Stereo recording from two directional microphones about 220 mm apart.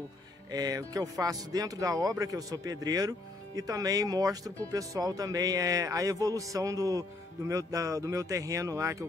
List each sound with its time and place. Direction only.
0.5 s speech: 15° right (ahead or behind)